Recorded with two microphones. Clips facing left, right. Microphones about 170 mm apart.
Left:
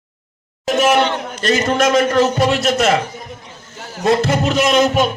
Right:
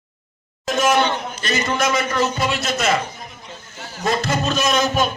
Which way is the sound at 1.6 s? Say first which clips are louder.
Left 4 dB; 40° left (ahead or behind).